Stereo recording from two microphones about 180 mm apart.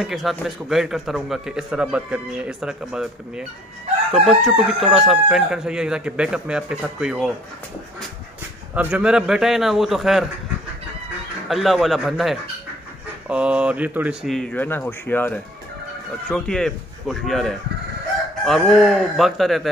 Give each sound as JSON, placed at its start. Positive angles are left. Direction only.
{"t": 0.0, "sound": "a man's voice", "side_deg": 0}
{"t": 8.7, "sound": "a man's voice", "side_deg": -5}
{"t": 11.4, "sound": "a man's voice", "side_deg": 0}
{"t": 14.3, "sound": "a man's voice", "side_deg": 5}